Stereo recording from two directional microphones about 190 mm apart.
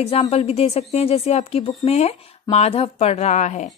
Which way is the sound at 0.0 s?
35° left (ahead or behind).